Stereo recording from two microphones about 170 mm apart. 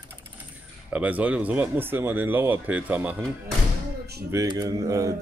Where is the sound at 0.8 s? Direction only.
10° right (ahead or behind).